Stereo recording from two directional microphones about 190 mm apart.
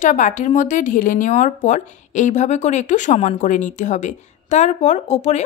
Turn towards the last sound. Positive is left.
turn(degrees=35)  # may be behind; listen again after turning